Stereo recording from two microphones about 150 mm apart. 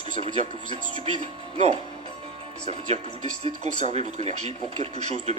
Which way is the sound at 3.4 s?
45° right (ahead or behind).